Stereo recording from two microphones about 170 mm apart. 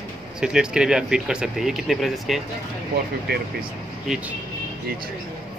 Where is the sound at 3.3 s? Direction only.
70° right (ahead or behind).